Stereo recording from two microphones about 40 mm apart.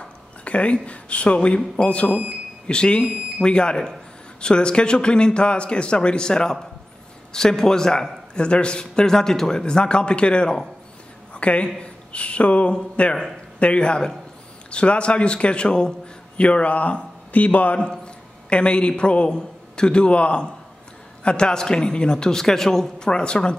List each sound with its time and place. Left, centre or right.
0.0 s a man's voice: left
17.7 s a man's voice: left